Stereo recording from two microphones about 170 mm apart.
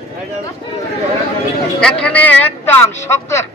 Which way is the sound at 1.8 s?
10° left (ahead or behind).